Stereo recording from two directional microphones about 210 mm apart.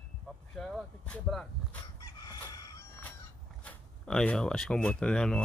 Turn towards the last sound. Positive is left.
turn(degrees=5)  # may be behind; listen again after turning